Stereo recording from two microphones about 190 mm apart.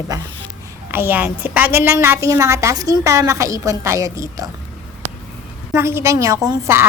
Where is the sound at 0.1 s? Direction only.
20° right (ahead or behind).